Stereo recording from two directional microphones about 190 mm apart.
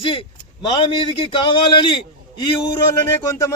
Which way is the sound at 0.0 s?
25° left (ahead or behind).